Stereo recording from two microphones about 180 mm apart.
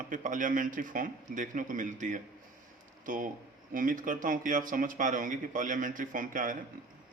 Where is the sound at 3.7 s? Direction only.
50° right (ahead or behind).